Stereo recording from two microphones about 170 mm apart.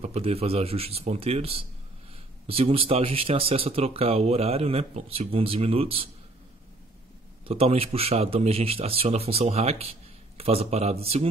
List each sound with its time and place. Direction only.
0.0 s speech: 35° right (ahead or behind)
7.4 s speech: 35° right (ahead or behind)